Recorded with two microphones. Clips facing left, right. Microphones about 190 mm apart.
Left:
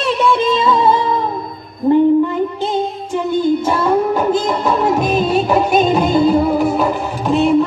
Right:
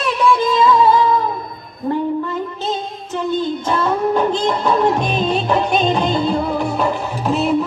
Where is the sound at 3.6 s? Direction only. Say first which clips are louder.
Left 3 dB; 5° left (ahead or behind).